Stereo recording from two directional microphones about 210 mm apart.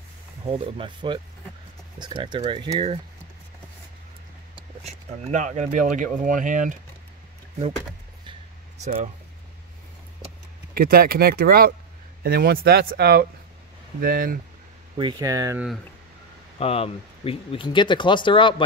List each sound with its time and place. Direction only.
0.5 s speech: 25° right (ahead or behind)
4.8 s speech: 35° right (ahead or behind)
8.8 s speech: 35° right (ahead or behind)
10.7 s speech: 45° right (ahead or behind)
15.0 s speech: 20° right (ahead or behind)
16.5 s speech: 25° left (ahead or behind)